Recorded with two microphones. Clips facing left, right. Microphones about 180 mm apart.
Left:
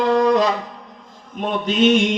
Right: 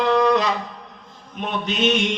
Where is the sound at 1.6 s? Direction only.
45° left (ahead or behind).